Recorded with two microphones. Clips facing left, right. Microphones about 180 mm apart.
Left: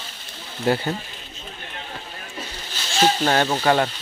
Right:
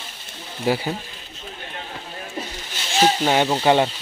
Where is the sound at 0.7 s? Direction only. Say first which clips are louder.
Left 1 dB; 5° right (ahead or behind).